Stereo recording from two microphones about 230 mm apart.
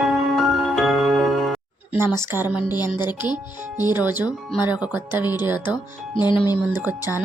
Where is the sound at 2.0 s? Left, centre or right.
Centre.